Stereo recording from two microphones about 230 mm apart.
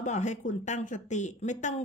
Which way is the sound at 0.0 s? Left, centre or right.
Left.